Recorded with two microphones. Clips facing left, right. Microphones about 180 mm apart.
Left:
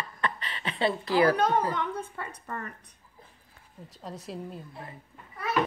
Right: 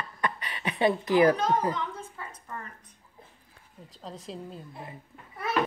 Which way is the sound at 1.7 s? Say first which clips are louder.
Left 3 dB; 65° left (ahead or behind).